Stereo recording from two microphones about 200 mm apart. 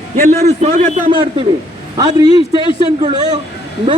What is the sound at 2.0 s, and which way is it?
A man's voice, 20° right (ahead or behind).